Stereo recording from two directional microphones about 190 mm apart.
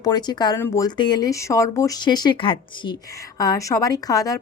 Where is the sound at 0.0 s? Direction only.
20° left (ahead or behind).